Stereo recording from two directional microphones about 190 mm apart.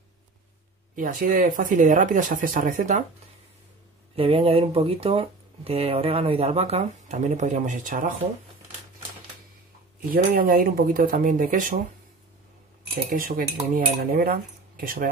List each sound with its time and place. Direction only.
0.9 s cutlery: 45° right (ahead or behind)
4.1 s speech: 30° right (ahead or behind); by 8.1 s 45° right (ahead or behind)
10.1 s cutlery: 50° right (ahead or behind)
12.9 s cutlery: 50° right (ahead or behind)